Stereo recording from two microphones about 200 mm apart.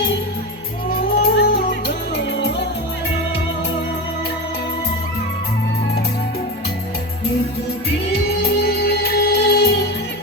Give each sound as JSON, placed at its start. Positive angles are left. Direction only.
{"t": 0.9, "sound": "music", "side_deg": 45}
{"t": 8.1, "sound": "music", "side_deg": 50}